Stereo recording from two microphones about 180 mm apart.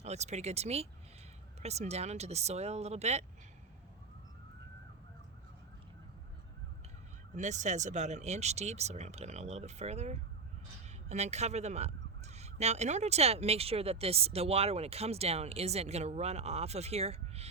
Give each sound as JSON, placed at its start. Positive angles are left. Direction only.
{"t": 0.0, "sound": "speech", "side_deg": -40}
{"t": 7.3, "sound": "speech", "side_deg": -40}